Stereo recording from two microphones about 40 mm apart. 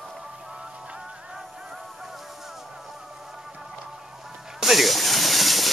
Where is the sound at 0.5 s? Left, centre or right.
Right.